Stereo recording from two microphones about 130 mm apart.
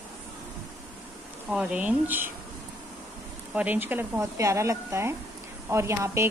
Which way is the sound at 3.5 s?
10° right (ahead or behind).